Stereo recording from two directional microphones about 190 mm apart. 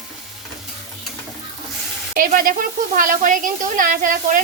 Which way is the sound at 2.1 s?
50° right (ahead or behind).